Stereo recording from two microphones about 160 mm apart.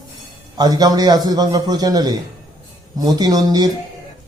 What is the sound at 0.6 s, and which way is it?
A man's voice, 25° right (ahead or behind).